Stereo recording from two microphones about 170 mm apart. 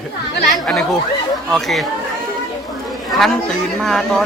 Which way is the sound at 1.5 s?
Centre (ahead or behind).